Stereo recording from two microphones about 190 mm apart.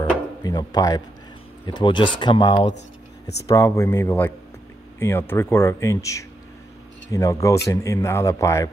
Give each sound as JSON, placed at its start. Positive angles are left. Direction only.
{"t": 0.4, "sound": "speech", "side_deg": 20}